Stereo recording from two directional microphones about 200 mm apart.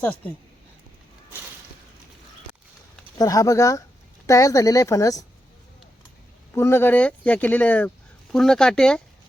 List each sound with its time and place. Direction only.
0.0 s speech: 5° left (ahead or behind)
3.2 s speech: 15° left (ahead or behind)
6.5 s speech: 10° left (ahead or behind)